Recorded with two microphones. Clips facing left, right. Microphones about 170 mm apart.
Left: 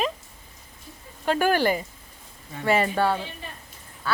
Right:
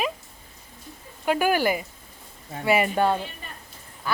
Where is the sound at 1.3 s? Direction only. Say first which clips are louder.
Even; 10° right (ahead or behind).